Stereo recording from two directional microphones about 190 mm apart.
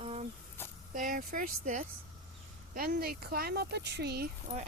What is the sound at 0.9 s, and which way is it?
Speech, 45° right (ahead or behind).